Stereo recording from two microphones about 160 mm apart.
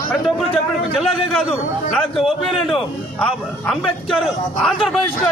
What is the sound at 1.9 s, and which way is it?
A man's voice, centre (ahead or behind).